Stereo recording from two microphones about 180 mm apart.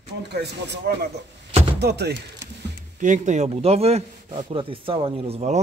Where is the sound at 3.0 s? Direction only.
45° right (ahead or behind).